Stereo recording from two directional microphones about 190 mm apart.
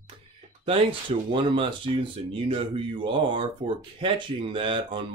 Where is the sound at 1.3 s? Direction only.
25° right (ahead or behind).